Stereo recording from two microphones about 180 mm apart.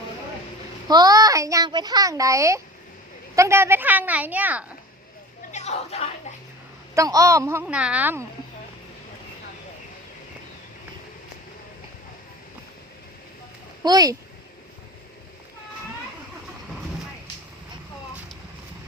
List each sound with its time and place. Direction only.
0.9 s a child's voice: 20° right (ahead or behind)
5.5 s speech: 40° left (ahead or behind)
6.9 s speech: 15° right (ahead or behind)
13.8 s a child's voice: 20° right (ahead or behind)